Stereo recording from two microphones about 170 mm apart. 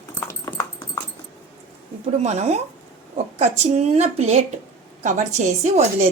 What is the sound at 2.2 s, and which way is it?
A woman's voice, 40° right (ahead or behind).